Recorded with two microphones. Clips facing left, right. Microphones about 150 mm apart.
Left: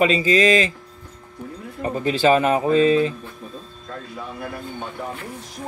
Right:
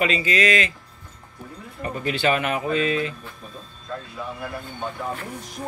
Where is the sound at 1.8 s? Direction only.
30° left (ahead or behind).